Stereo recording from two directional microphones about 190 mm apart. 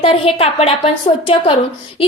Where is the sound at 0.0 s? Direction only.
30° left (ahead or behind).